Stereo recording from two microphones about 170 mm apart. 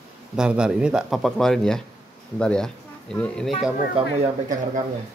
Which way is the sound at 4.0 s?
30° right (ahead or behind).